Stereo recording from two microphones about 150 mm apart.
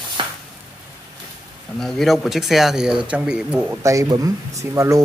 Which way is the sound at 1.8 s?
Centre (ahead or behind).